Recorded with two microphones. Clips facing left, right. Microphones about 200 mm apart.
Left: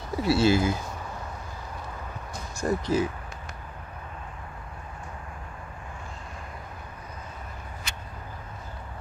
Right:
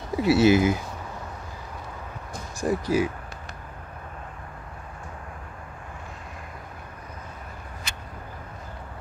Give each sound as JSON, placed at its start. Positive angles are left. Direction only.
{"t": 0.1, "sound": "speech", "side_deg": -20}
{"t": 2.6, "sound": "speech", "side_deg": -15}